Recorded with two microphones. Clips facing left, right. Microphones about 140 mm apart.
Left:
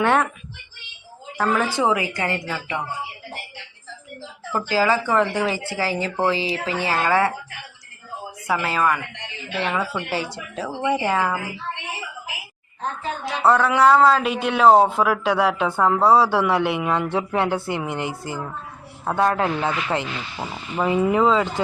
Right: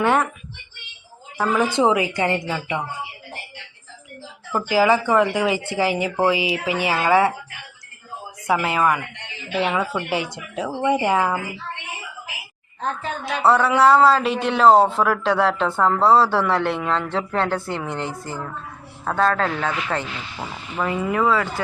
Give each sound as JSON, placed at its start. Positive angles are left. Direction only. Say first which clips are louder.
{"t": 0.0, "sound": "speech", "louder": "even", "side_deg": -5}
{"t": 1.4, "sound": "a woman's voice", "louder": "right 2 dB", "side_deg": -10}
{"t": 4.5, "sound": "speech", "louder": "right 3 dB", "side_deg": -15}
{"t": 8.4, "sound": "speech", "louder": "right 2 dB", "side_deg": -15}
{"t": 10.8, "sound": "speech", "louder": "right 2 dB", "side_deg": 0}
{"t": 11.0, "sound": "speech", "louder": "right 2 dB", "side_deg": -10}
{"t": 13.4, "sound": "speech", "louder": "even", "side_deg": 0}